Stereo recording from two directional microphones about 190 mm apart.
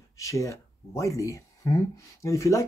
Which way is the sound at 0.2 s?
15° left (ahead or behind).